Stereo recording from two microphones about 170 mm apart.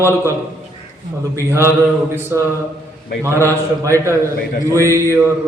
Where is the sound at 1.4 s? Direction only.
15° right (ahead or behind).